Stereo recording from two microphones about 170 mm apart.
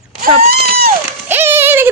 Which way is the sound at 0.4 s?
60° right (ahead or behind).